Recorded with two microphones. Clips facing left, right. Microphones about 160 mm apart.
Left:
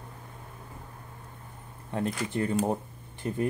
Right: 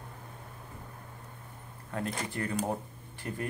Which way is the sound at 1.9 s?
25° left (ahead or behind).